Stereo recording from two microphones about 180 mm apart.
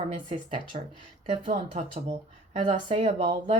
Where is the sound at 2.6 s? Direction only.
30° right (ahead or behind).